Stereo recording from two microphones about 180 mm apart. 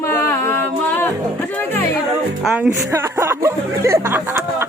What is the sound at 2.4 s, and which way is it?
Speech, 5° right (ahead or behind).